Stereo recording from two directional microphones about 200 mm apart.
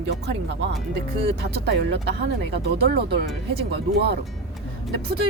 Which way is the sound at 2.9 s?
50° right (ahead or behind).